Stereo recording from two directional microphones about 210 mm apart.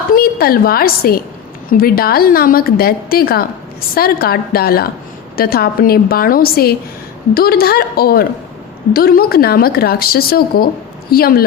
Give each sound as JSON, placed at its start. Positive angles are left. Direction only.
{"t": 0.1, "sound": "a woman's voice", "side_deg": 45}